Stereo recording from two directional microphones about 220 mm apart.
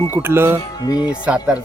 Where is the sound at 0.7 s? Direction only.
15° left (ahead or behind).